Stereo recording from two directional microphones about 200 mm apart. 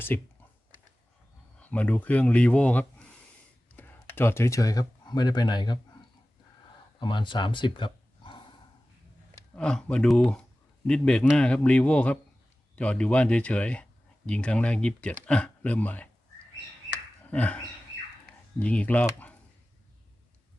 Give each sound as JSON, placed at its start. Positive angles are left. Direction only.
{"t": 0.1, "sound": "speech", "side_deg": 10}
{"t": 1.5, "sound": "speech", "side_deg": 5}
{"t": 7.0, "sound": "speech", "side_deg": 25}
{"t": 9.6, "sound": "speech", "side_deg": 5}
{"t": 17.2, "sound": "a sound", "side_deg": 5}
{"t": 18.6, "sound": "speech", "side_deg": 5}